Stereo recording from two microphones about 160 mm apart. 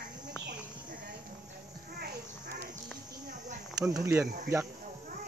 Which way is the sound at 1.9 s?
75° right (ahead or behind).